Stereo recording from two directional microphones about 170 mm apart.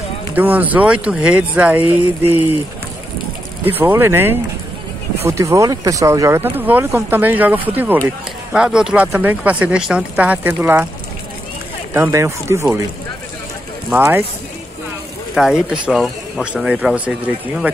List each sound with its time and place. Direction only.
0.3 s speech: 10° right (ahead or behind)
3.6 s speech: 15° right (ahead or behind)
11.9 s speech: 15° right (ahead or behind)
15.3 s speech: 5° right (ahead or behind)